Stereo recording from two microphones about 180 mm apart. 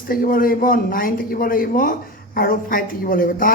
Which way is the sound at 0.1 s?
50° left (ahead or behind).